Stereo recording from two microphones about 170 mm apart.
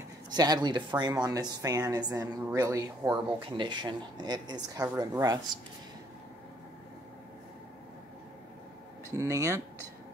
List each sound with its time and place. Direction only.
0.3 s speech: 25° right (ahead or behind)
9.1 s speech: 15° right (ahead or behind)